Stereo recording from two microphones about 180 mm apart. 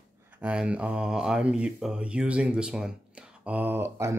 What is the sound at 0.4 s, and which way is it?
Speech, 5° right (ahead or behind).